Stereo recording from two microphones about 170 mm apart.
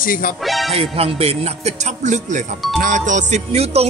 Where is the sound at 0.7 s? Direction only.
35° right (ahead or behind).